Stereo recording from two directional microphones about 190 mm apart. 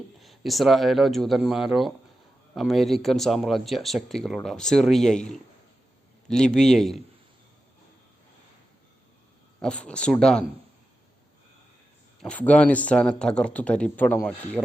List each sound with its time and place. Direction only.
0.2 s speech: centre (ahead or behind)
9.6 s speech: 5° left (ahead or behind)
12.2 s speech: 5° left (ahead or behind)